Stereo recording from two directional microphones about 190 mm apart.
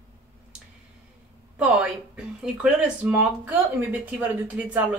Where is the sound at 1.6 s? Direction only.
5° right (ahead or behind).